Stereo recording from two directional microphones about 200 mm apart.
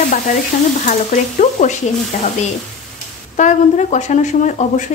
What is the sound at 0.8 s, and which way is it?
Sizzle, 35° left (ahead or behind).